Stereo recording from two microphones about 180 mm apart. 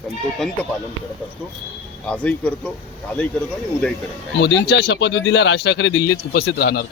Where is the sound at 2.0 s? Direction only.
5° left (ahead or behind).